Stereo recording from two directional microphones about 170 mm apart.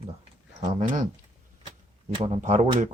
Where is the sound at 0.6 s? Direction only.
45° right (ahead or behind).